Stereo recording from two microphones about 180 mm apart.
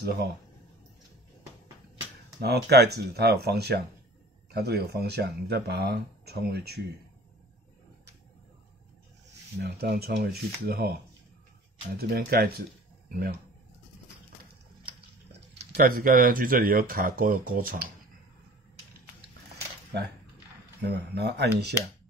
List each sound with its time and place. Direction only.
2.4 s speech: 65° right (ahead or behind)
9.6 s speech: 60° right (ahead or behind)
12.0 s speech: 60° right (ahead or behind)
15.6 s speech: 55° right (ahead or behind)
20.8 s speech: 65° right (ahead or behind)